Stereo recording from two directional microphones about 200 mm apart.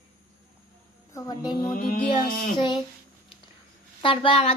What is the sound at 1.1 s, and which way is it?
Speech, 20° left (ahead or behind).